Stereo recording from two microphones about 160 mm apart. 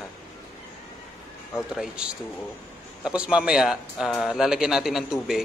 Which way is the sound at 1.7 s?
5° right (ahead or behind).